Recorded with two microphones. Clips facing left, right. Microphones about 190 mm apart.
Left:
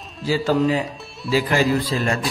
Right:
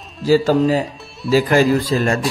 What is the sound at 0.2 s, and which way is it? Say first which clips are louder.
A man's voice: right 5 dB; 40° right (ahead or behind).